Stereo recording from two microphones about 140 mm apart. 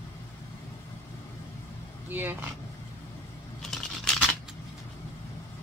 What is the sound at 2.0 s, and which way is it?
Speech, 15° right (ahead or behind).